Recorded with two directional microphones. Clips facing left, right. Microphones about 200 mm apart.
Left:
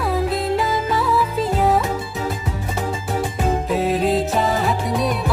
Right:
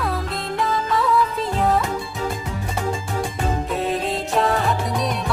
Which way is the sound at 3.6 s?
Centre (ahead or behind).